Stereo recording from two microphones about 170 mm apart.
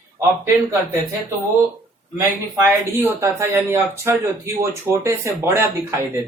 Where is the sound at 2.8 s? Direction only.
15° right (ahead or behind).